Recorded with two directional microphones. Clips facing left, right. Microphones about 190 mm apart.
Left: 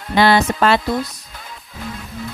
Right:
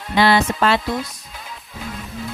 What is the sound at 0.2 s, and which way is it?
Music, 45° left (ahead or behind).